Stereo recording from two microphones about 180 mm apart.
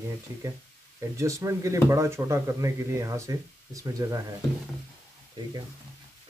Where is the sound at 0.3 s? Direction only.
20° right (ahead or behind).